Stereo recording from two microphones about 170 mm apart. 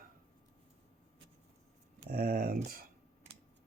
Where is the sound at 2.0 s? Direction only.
55° right (ahead or behind).